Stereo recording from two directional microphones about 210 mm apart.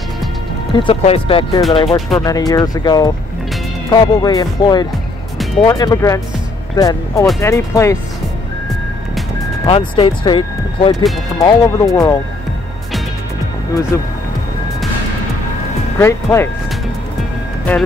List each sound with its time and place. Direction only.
0.7 s speech: 25° left (ahead or behind)
9.7 s speech: 25° left (ahead or behind)
11.3 s speech: 15° left (ahead or behind)
16.0 s speech: 10° left (ahead or behind)